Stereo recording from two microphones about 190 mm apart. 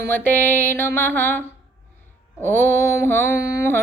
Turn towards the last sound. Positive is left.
turn(degrees=15)  # may be behind; listen again after turning